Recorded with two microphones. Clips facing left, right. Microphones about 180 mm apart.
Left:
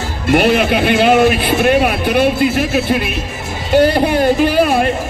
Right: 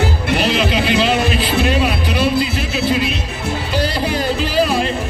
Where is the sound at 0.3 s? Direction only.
55° left (ahead or behind).